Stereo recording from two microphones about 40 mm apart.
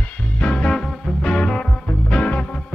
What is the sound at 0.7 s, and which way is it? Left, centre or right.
Music, left.